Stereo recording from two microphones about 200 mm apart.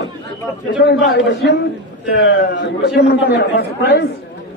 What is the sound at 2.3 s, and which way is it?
A man's voice, 60° left (ahead or behind).